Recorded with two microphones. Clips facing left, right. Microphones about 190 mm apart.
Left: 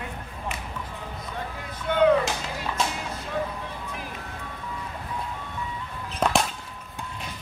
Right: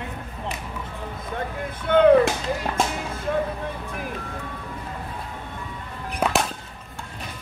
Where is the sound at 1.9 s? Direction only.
55° right (ahead or behind).